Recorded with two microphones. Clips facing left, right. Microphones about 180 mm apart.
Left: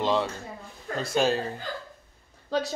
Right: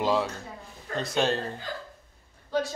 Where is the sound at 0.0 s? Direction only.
5° right (ahead or behind).